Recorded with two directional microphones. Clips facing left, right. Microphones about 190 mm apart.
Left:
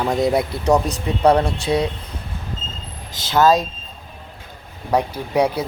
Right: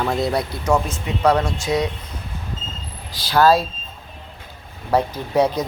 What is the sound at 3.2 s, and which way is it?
Speech, 20° left (ahead or behind).